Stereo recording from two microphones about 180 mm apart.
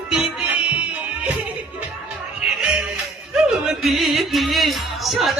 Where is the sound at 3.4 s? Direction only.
Centre (ahead or behind).